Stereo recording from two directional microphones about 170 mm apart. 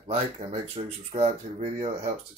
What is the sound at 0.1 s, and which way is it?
Speech, 40° right (ahead or behind).